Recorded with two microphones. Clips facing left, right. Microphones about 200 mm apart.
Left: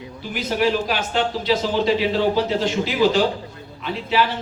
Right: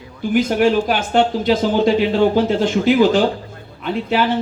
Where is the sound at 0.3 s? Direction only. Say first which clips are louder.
Right 6 dB; 50° right (ahead or behind).